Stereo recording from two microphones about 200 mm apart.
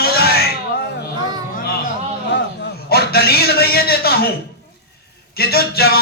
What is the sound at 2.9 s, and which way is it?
A man's voice, 50° left (ahead or behind).